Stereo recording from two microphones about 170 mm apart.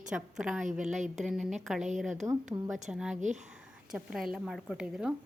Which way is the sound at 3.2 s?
45° right (ahead or behind).